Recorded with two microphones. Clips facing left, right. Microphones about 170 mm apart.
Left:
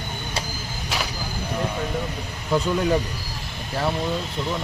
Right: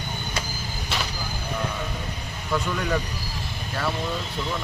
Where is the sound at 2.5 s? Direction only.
25° left (ahead or behind).